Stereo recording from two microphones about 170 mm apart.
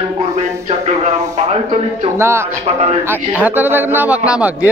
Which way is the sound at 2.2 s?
15° right (ahead or behind).